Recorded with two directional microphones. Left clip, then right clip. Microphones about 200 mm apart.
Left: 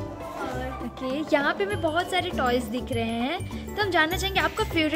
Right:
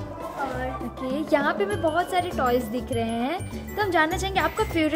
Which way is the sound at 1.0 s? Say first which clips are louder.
Right 1 dB; centre (ahead or behind).